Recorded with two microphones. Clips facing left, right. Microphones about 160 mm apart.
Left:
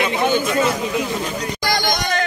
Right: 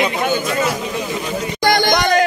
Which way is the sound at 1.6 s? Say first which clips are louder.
Right 7 dB; 65° right (ahead or behind).